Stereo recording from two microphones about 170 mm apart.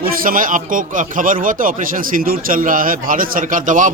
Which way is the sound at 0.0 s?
55° right (ahead or behind).